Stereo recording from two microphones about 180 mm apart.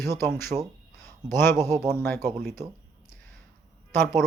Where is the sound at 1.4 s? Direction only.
15° left (ahead or behind).